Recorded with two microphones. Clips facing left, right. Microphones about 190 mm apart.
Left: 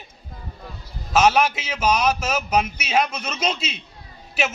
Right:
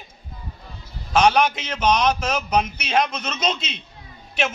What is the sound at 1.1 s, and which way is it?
A man's voice, 5° left (ahead or behind).